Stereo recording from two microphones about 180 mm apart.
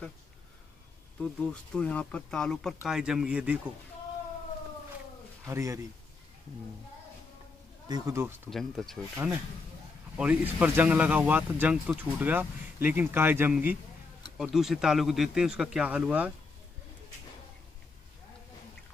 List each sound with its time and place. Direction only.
1.2 s speech: 5° left (ahead or behind)
5.5 s speech: 15° right (ahead or behind)
7.9 s speech: 15° right (ahead or behind)
8.5 s speech: centre (ahead or behind)